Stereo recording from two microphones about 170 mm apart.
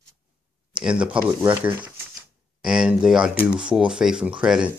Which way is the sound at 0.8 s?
5° right (ahead or behind).